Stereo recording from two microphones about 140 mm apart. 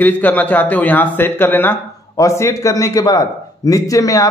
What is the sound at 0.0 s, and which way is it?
A man's voice, 10° left (ahead or behind).